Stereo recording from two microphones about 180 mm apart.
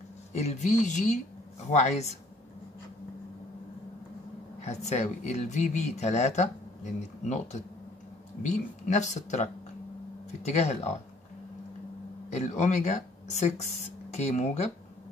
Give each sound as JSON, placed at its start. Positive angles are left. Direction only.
{"t": 0.3, "sound": "speech", "side_deg": 40}
{"t": 4.6, "sound": "speech", "side_deg": 40}
{"t": 12.3, "sound": "speech", "side_deg": 40}